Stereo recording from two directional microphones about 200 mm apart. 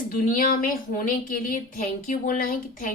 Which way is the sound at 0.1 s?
45° left (ahead or behind).